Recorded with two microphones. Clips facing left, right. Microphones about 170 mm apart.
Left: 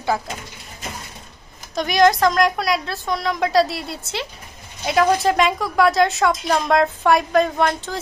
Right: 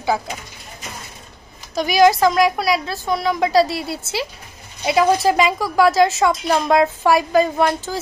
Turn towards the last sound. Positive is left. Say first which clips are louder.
# right 2 dB
turn(degrees=-5)  # may be behind; listen again after turning